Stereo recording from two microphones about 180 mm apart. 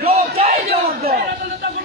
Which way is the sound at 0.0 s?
35° right (ahead or behind).